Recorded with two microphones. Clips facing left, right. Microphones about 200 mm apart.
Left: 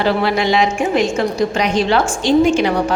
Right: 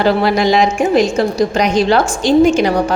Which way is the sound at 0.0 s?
40° right (ahead or behind).